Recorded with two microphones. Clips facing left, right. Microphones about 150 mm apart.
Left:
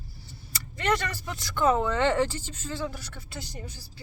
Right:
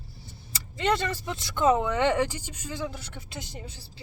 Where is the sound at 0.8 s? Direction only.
25° right (ahead or behind).